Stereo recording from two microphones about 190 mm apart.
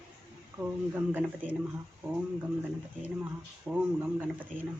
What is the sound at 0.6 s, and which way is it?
Speech, 10° right (ahead or behind).